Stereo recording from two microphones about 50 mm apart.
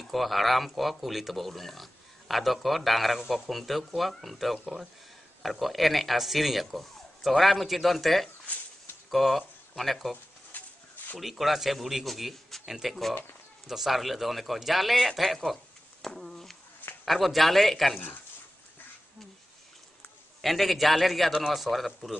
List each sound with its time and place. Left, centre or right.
0.0 s speech: centre
10.5 s a sound: left
11.1 s speech: centre
20.4 s speech: centre